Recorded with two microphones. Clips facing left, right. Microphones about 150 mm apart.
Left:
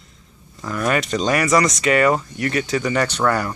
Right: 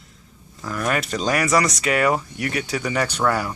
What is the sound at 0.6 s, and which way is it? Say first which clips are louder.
Speech: left 3 dB; centre (ahead or behind).